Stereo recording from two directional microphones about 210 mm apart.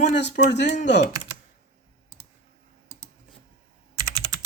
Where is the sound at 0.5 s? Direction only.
55° left (ahead or behind).